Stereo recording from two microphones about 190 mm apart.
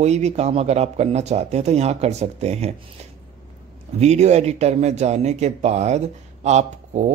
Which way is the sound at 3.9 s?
35° right (ahead or behind).